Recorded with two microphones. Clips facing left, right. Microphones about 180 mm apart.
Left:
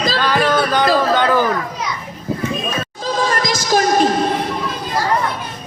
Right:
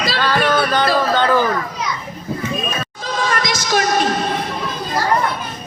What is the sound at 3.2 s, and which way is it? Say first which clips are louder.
Music: right 1 dB; 35° left (ahead or behind).